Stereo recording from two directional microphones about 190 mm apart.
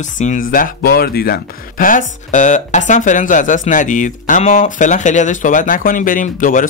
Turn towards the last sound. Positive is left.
turn(degrees=45)  # may be behind; listen again after turning